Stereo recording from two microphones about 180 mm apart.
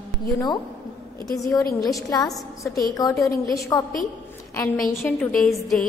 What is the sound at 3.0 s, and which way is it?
Speech, 20° left (ahead or behind).